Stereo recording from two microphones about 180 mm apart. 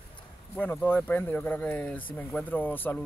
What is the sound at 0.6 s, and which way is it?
Speech, 10° left (ahead or behind).